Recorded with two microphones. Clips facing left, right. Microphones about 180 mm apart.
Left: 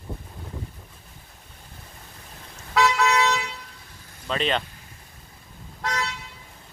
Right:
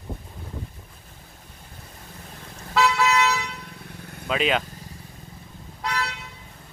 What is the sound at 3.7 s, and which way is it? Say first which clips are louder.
Vehicle: right 9 dB; 60° right (ahead or behind).